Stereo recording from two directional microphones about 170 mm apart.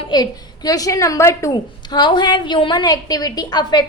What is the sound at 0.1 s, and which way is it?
A woman's voice, 25° left (ahead or behind).